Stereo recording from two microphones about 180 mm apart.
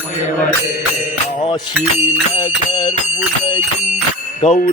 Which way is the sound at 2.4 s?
35° left (ahead or behind).